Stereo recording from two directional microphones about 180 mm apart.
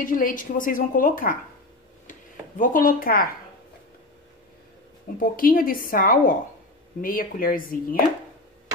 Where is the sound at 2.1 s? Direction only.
45° left (ahead or behind).